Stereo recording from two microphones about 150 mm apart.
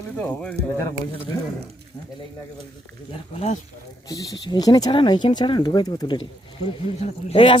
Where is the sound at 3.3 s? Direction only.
50° left (ahead or behind).